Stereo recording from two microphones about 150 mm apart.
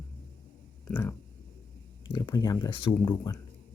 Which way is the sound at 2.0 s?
25° left (ahead or behind).